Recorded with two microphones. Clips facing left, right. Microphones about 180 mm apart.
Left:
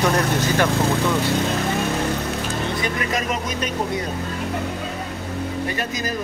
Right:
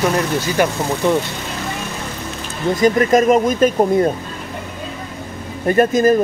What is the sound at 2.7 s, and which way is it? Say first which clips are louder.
Speech: right 11 dB; 45° right (ahead or behind).